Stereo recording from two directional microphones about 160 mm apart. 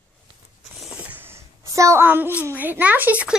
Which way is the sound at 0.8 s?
10° right (ahead or behind).